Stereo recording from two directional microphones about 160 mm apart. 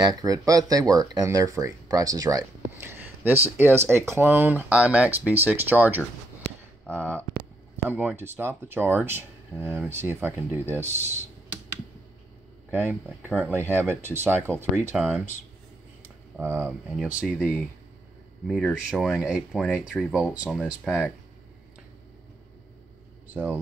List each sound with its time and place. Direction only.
0.0 s speech: 25° right (ahead or behind)
6.9 s speech: 10° left (ahead or behind)
7.9 s speech: 10° right (ahead or behind)
12.7 s speech: 15° right (ahead or behind)
18.5 s speech: 5° left (ahead or behind)
23.2 s speech: 10° right (ahead or behind)